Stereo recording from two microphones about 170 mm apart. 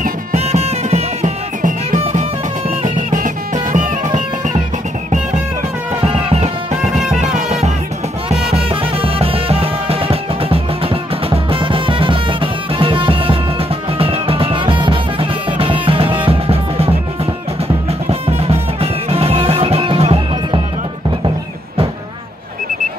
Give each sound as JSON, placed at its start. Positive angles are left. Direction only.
{"t": 0.0, "sound": "music", "side_deg": -45}
{"t": 5.9, "sound": "music", "side_deg": -30}
{"t": 18.4, "sound": "music", "side_deg": -35}